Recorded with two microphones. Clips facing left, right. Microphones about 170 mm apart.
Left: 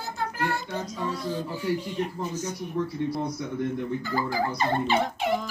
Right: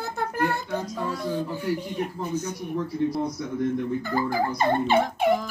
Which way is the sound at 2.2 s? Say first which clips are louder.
Right 3 dB; 60° right (ahead or behind).